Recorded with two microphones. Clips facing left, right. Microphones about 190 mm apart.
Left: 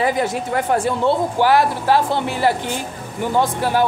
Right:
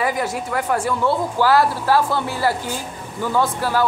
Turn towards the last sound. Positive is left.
turn(degrees=20)  # may be behind; listen again after turning